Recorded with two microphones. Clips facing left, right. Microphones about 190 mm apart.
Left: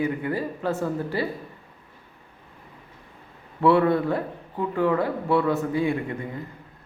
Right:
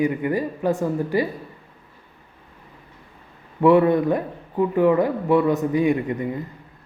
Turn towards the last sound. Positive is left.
turn(degrees=-15)  # may be behind; listen again after turning